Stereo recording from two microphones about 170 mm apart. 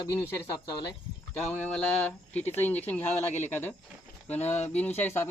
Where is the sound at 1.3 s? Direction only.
10° left (ahead or behind).